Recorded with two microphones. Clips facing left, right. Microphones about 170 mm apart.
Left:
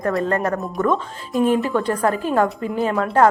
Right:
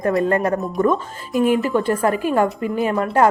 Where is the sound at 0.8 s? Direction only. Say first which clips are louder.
Right 1 dB; 5° right (ahead or behind).